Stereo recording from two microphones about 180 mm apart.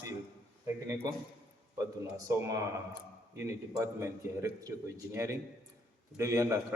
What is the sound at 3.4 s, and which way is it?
Speech, 15° right (ahead or behind).